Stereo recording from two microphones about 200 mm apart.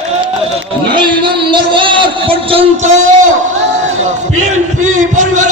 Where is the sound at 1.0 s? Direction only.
25° right (ahead or behind).